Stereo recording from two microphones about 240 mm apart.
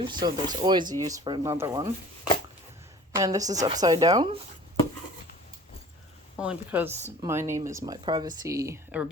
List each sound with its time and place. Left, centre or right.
0.0 s speech: centre
3.2 s speech: centre
6.4 s speech: centre